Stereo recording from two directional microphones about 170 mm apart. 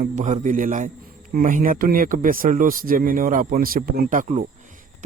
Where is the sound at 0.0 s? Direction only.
45° right (ahead or behind).